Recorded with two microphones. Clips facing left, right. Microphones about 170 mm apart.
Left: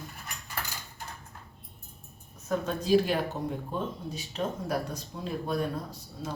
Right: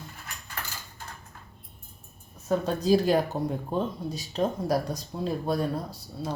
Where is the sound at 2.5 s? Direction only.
35° right (ahead or behind).